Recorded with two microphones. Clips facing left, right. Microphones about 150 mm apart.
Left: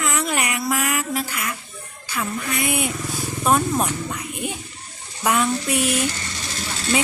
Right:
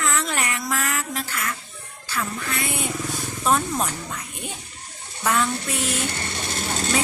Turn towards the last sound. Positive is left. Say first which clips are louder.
# right 3 dB
turn(degrees=-50)  # may be behind; listen again after turning